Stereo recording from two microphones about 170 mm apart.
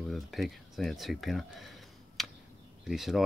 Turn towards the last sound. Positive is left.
turn(degrees=0)  # may be behind; listen again after turning